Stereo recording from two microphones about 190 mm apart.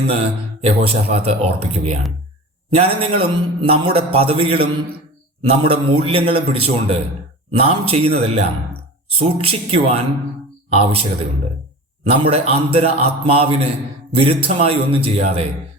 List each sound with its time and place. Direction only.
0.1 s a man's voice: 35° right (ahead or behind)
12.2 s speech: 30° right (ahead or behind)